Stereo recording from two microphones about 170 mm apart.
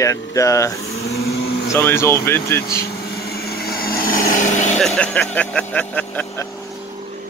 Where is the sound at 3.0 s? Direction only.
65° left (ahead or behind).